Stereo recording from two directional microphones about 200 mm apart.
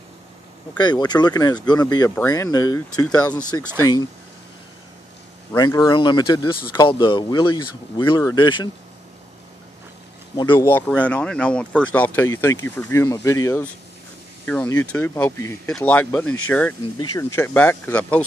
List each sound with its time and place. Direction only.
0.7 s speech: 20° left (ahead or behind)
3.8 s speech: 90° left
5.6 s speech: 20° left (ahead or behind)
10.3 s speech: 20° left (ahead or behind)
10.7 s speech: 10° left (ahead or behind)